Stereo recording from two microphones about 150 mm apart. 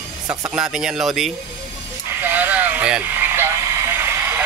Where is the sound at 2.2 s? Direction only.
10° right (ahead or behind).